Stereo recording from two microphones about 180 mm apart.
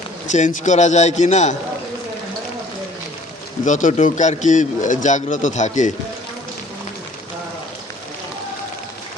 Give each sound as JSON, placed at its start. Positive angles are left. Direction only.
{"t": 0.3, "sound": "a man's voice", "side_deg": 45}
{"t": 3.7, "sound": "speech", "side_deg": 45}